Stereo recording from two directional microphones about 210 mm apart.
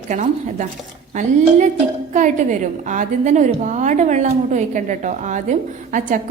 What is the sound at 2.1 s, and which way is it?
A woman's voice, 35° right (ahead or behind).